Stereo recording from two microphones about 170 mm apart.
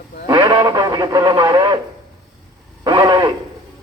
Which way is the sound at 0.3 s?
25° right (ahead or behind).